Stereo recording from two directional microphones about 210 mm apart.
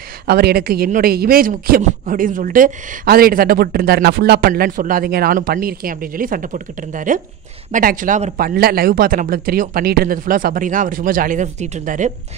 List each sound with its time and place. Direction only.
0.3 s speech: 50° right (ahead or behind)